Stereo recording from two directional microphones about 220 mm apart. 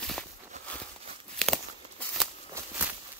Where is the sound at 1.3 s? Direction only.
Centre (ahead or behind).